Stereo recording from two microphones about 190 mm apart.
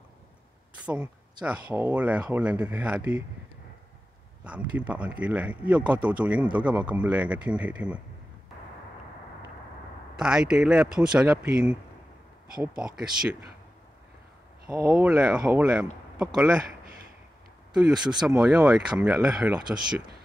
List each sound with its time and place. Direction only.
0.8 s speech: 5° right (ahead or behind)
4.5 s speech: 5° right (ahead or behind)
10.1 s speech: 5° right (ahead or behind)
14.7 s speech: 15° right (ahead or behind)
15.0 s speech: 5° right (ahead or behind)
17.8 s speech: 5° right (ahead or behind)